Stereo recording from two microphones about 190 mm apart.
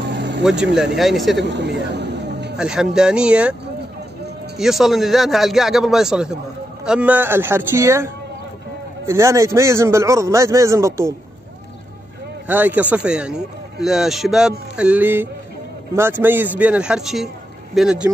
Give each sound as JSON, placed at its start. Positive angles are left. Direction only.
{"t": 0.0, "sound": "vehicle", "side_deg": -65}
{"t": 0.4, "sound": "a man's voice", "side_deg": -5}
{"t": 1.4, "sound": "a sound", "side_deg": -65}
{"t": 2.5, "sound": "a man's voice", "side_deg": -5}
{"t": 4.6, "sound": "a man's voice", "side_deg": 0}
{"t": 12.4, "sound": "a man's voice", "side_deg": -10}